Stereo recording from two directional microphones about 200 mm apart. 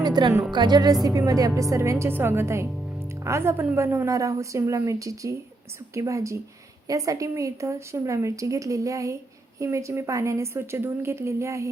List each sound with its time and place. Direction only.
0.0 s speech: 20° right (ahead or behind)